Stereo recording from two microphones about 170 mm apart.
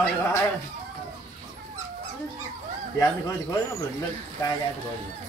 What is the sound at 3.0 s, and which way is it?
Speech, 20° left (ahead or behind).